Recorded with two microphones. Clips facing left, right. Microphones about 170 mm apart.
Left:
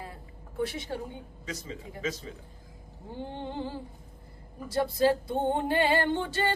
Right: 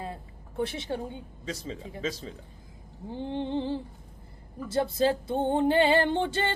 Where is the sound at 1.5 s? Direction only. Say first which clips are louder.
Right 3 dB; 30° right (ahead or behind).